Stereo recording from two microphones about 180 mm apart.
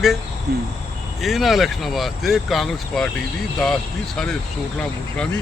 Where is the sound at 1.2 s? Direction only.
Centre (ahead or behind).